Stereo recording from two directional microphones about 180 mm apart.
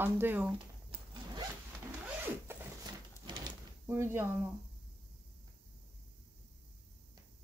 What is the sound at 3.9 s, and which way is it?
Speech, 15° right (ahead or behind).